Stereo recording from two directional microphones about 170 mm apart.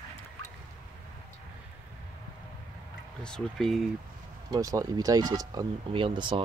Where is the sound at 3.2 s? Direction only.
5° left (ahead or behind).